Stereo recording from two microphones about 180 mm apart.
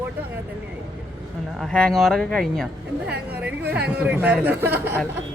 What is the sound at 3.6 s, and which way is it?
Speech, 70° right (ahead or behind).